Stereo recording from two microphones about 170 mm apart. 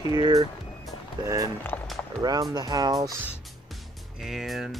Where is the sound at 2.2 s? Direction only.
25° right (ahead or behind).